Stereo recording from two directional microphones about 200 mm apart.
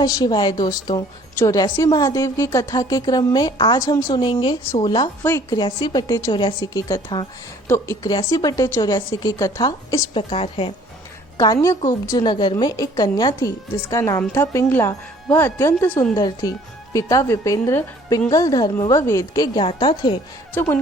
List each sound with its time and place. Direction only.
0.0 s a woman's voice: 20° left (ahead or behind)
11.3 s a woman's voice: 15° left (ahead or behind)
20.5 s speech: 10° left (ahead or behind)